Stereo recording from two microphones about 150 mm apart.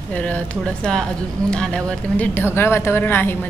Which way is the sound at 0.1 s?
10° left (ahead or behind).